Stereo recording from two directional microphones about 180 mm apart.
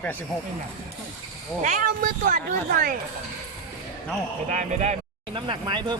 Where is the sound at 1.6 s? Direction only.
45° right (ahead or behind).